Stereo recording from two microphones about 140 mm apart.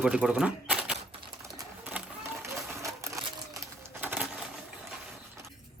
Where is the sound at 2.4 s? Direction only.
20° right (ahead or behind).